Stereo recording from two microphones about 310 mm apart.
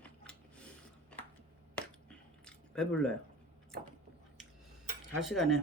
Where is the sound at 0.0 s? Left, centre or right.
Centre.